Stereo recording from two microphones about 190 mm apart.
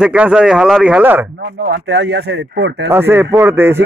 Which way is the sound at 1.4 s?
60° right (ahead or behind).